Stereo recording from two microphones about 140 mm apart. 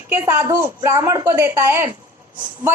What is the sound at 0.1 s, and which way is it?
A woman's voice, 15° right (ahead or behind).